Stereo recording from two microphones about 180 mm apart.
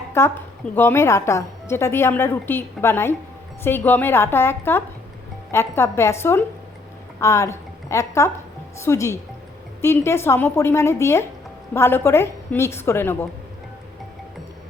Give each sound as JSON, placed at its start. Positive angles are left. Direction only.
{"t": 0.2, "sound": "a woman's voice", "side_deg": 15}